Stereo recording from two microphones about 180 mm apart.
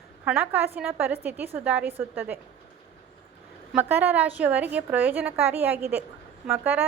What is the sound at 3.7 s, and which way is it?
A woman's voice, 10° right (ahead or behind).